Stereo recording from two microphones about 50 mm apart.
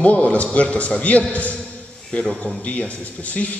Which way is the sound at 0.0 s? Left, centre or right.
Left.